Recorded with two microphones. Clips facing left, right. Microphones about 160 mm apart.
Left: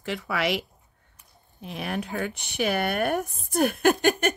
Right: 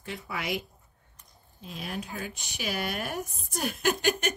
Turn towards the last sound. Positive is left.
turn(degrees=55)  # may be behind; listen again after turning